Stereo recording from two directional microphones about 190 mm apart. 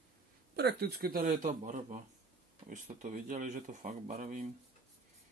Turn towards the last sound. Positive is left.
turn(degrees=-45)  # may be behind; listen again after turning